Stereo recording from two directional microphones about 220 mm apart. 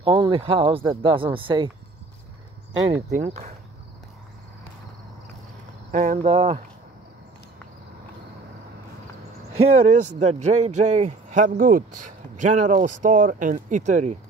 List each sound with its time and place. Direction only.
0.0 s speech: 25° right (ahead or behind)
2.9 s speech: 30° right (ahead or behind)
5.9 s speech: 35° right (ahead or behind)
9.7 s speech: 30° right (ahead or behind)